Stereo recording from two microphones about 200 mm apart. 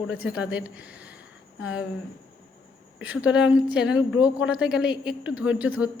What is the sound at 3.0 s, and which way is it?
A woman's voice, 5° right (ahead or behind).